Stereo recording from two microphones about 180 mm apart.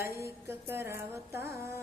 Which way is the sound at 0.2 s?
15° right (ahead or behind).